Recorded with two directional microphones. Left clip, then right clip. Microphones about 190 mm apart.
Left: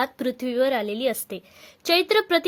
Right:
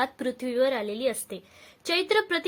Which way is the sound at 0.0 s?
25° left (ahead or behind).